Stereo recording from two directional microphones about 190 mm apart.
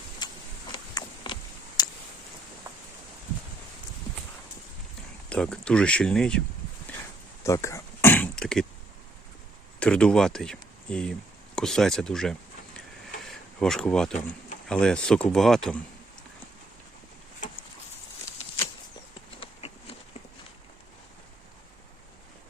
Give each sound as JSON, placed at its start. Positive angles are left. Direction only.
{"t": 0.2, "sound": "a sound", "side_deg": 20}
{"t": 5.3, "sound": "speech", "side_deg": 5}
{"t": 7.4, "sound": "throat clearing", "side_deg": 15}
{"t": 9.8, "sound": "speech", "side_deg": 5}
{"t": 13.2, "sound": "a sound", "side_deg": 0}
{"t": 14.7, "sound": "speech", "side_deg": 5}
{"t": 19.4, "sound": "insect", "side_deg": 30}